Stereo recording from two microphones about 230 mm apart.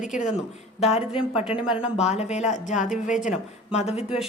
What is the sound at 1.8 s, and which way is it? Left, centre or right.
A woman's voice, left.